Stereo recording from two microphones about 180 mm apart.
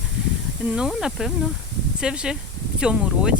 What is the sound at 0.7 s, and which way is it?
Speech, 5° right (ahead or behind).